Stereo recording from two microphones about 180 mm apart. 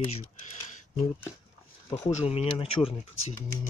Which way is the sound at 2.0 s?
35° left (ahead or behind).